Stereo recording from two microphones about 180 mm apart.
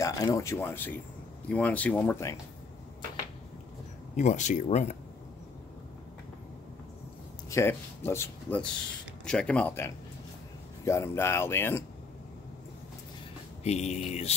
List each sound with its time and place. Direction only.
0.0 s speech: 20° left (ahead or behind)
4.2 s speech: 40° left (ahead or behind)
7.4 s speech: 15° left (ahead or behind)
13.7 s speech: 40° left (ahead or behind)